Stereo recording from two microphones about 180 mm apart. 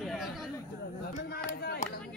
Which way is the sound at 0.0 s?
Centre (ahead or behind).